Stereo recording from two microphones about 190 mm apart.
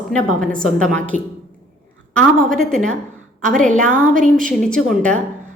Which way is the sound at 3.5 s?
40° right (ahead or behind).